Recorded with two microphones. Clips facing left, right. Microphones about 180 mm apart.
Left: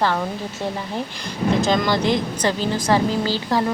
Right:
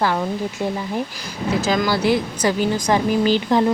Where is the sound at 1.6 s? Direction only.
5° right (ahead or behind).